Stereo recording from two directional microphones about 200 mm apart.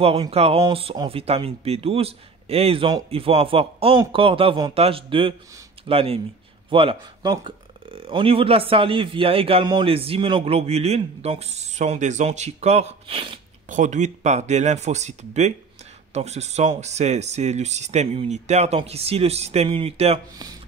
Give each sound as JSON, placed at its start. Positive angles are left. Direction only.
{"t": 0.0, "sound": "speech", "side_deg": -30}
{"t": 13.7, "sound": "speech", "side_deg": -40}